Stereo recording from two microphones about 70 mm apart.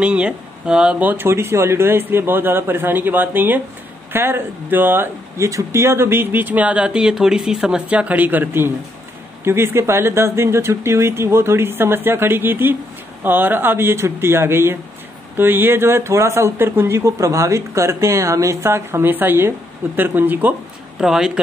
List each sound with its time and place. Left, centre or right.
0.0 s speech: centre
0.9 s speech: right
5.5 s speech: right; by 7.8 s centre
7.9 s speech: centre
21.0 s speech: centre